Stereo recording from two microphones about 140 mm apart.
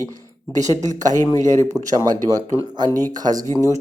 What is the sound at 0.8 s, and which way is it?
Speech, 60° right (ahead or behind).